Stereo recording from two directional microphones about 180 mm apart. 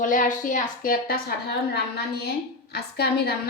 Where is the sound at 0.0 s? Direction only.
45° left (ahead or behind).